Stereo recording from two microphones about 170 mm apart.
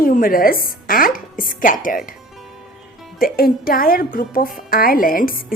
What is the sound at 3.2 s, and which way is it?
Speech, 60° left (ahead or behind).